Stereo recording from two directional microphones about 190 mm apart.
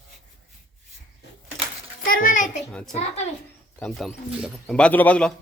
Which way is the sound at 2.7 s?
Centre (ahead or behind).